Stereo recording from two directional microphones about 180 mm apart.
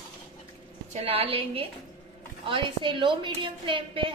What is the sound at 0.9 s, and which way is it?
A woman's voice, 35° right (ahead or behind).